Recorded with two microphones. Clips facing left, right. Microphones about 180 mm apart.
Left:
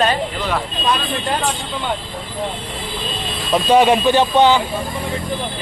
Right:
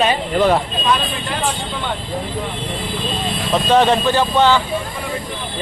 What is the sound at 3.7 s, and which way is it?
Speech, 10° left (ahead or behind).